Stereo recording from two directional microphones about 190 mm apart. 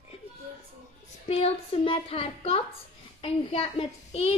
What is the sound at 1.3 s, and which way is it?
A child's voice, 30° left (ahead or behind).